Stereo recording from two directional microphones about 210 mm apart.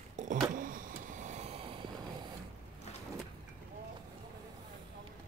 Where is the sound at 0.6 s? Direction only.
40° right (ahead or behind); by 1.9 s 25° right (ahead or behind).